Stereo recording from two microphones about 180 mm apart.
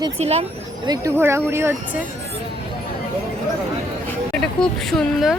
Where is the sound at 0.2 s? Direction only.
35° right (ahead or behind).